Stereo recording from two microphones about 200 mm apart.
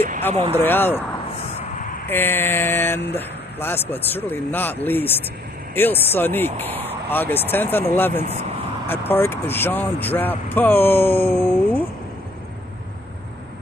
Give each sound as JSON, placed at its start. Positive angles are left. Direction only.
{"t": 0.3, "sound": "speech", "side_deg": -30}
{"t": 0.6, "sound": "speech", "side_deg": 10}
{"t": 2.0, "sound": "speech", "side_deg": 10}